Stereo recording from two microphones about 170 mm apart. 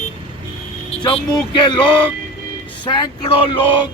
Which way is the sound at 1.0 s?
25° left (ahead or behind).